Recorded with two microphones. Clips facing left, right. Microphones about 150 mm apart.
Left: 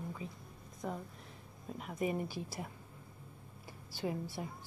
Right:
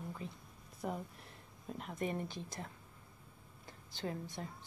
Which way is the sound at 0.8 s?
5° right (ahead or behind).